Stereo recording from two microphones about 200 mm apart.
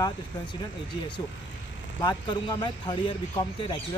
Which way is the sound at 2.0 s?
20° left (ahead or behind).